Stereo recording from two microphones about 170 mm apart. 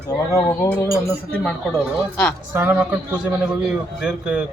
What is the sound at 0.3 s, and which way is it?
Speech, 15° left (ahead or behind).